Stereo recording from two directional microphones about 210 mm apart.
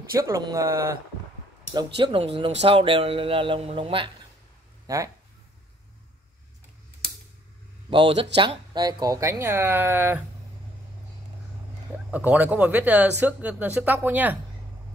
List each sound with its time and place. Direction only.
0.1 s speech: 15° right (ahead or behind)
7.9 s speech: 25° right (ahead or behind)
12.3 s speech: 5° right (ahead or behind)